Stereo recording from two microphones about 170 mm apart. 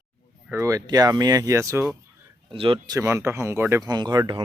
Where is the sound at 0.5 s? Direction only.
20° right (ahead or behind).